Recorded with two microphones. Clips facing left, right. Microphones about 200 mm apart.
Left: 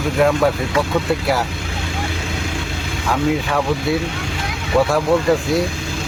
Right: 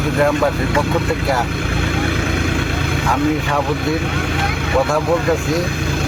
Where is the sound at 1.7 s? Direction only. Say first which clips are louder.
Right 6 dB; 60° right (ahead or behind).